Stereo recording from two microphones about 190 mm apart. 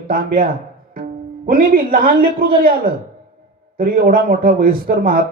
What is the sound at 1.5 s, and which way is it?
A man's voice, 50° right (ahead or behind).